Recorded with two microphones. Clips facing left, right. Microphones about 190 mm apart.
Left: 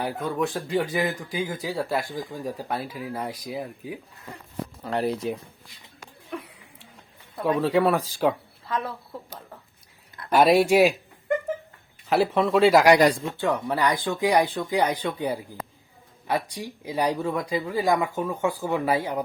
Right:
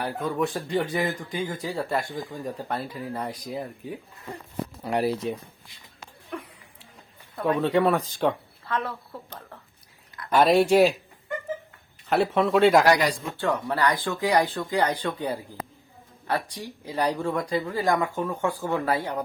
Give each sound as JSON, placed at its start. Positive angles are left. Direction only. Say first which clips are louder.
{"t": 0.2, "sound": "speech", "louder": "even", "side_deg": 0}
{"t": 4.8, "sound": "speech", "louder": "right 1 dB", "side_deg": -15}
{"t": 5.1, "sound": "speech", "louder": "even", "side_deg": 0}
{"t": 7.4, "sound": "speech", "louder": "left 1 dB", "side_deg": 0}
{"t": 12.0, "sound": "speech", "louder": "left 1 dB", "side_deg": 0}
{"t": 13.4, "sound": "speech", "louder": "even", "side_deg": 15}